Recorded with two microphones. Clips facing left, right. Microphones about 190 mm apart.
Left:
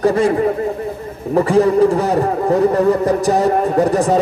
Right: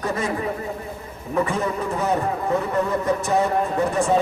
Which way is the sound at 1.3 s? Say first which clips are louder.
Left 11 dB; 35° left (ahead or behind).